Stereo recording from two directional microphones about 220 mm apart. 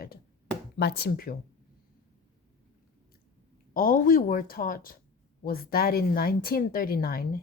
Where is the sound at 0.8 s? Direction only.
50° left (ahead or behind).